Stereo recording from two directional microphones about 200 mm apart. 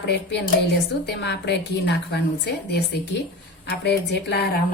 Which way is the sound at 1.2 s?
60° left (ahead or behind).